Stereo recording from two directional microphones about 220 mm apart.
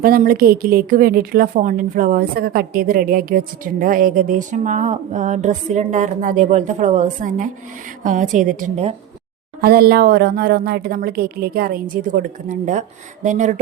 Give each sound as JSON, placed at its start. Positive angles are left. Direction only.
{"t": 0.0, "sound": "a woman's voice", "side_deg": -40}
{"t": 9.6, "sound": "a woman's voice", "side_deg": -45}